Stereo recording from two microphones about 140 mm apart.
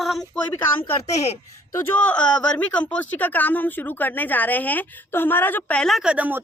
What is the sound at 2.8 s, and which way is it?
A woman's voice, 10° left (ahead or behind).